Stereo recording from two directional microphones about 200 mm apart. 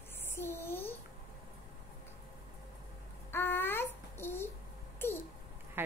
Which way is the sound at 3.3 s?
10° left (ahead or behind).